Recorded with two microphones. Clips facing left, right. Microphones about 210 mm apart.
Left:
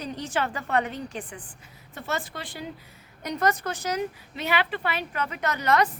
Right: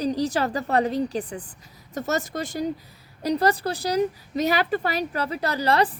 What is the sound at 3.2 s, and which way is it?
A woman's voice, 35° right (ahead or behind).